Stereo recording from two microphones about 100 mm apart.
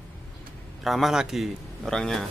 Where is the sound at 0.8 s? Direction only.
Centre (ahead or behind).